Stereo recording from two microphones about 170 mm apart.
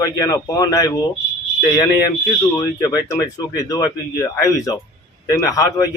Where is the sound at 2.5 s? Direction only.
20° left (ahead or behind).